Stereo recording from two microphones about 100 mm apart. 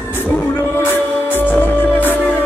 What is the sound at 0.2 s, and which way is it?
Music, 25° left (ahead or behind).